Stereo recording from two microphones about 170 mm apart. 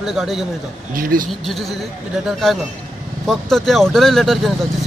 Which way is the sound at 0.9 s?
55° right (ahead or behind).